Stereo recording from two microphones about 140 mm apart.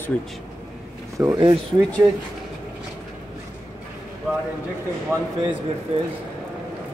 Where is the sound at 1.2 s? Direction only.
25° right (ahead or behind).